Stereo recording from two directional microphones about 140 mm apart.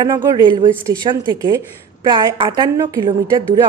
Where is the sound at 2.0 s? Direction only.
35° right (ahead or behind).